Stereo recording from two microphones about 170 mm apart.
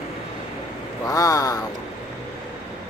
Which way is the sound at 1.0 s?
20° left (ahead or behind).